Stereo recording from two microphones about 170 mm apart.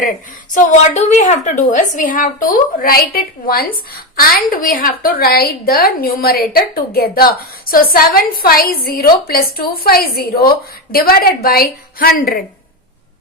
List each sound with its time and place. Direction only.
0.5 s a woman's voice: 45° left (ahead or behind)